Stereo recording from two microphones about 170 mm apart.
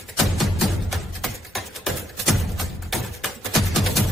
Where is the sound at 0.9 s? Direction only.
Centre (ahead or behind).